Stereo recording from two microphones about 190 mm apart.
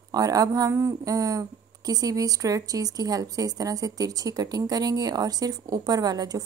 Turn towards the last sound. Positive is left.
turn(degrees=-20)  # may be behind; listen again after turning